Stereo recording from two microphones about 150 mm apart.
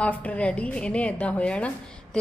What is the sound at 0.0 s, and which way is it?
A woman's voice, 10° left (ahead or behind).